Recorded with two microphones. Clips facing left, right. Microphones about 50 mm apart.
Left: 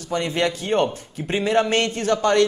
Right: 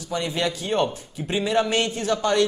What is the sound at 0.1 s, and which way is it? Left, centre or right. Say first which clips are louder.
A man's voice: left 3 dB; left.